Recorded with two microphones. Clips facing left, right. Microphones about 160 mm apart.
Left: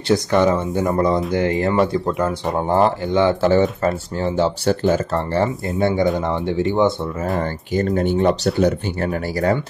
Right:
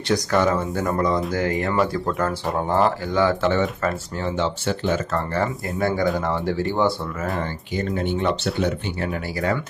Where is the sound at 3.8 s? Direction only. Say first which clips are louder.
Left 4 dB; 35° left (ahead or behind).